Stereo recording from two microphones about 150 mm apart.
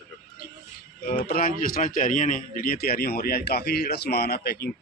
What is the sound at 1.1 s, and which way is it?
Speech, 75° left (ahead or behind).